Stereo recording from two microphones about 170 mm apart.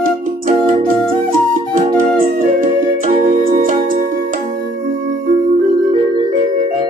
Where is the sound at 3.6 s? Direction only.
50° right (ahead or behind).